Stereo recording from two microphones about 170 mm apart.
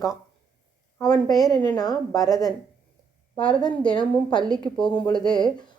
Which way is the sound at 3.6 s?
25° left (ahead or behind).